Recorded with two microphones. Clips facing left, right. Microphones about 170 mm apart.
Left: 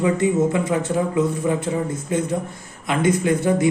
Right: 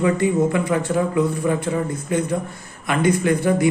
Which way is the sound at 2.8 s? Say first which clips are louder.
Right 1 dB; 20° left (ahead or behind).